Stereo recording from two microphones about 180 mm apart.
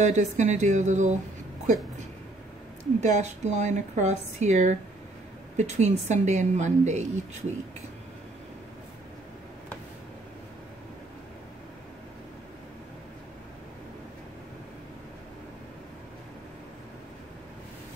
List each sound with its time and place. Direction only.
0.0 s speech: 40° right (ahead or behind)
3.0 s speech: 40° right (ahead or behind)